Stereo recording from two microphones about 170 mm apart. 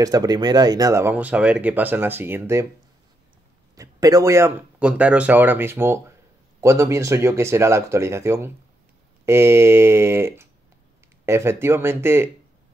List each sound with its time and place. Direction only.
0.0 s speech: 20° right (ahead or behind)
3.7 s speech: 20° right (ahead or behind)